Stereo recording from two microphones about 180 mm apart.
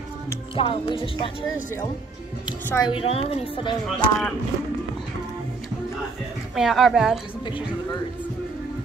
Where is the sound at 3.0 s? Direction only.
35° left (ahead or behind).